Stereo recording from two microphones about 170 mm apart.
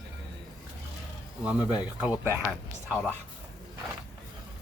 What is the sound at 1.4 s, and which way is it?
Speech, 10° right (ahead or behind).